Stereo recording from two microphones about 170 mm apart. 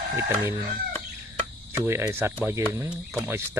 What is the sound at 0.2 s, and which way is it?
Speech, 15° right (ahead or behind).